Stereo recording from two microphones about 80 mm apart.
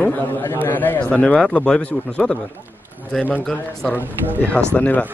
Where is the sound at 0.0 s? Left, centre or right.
Left.